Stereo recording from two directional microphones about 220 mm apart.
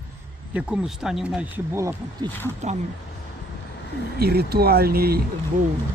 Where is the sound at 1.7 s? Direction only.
15° right (ahead or behind).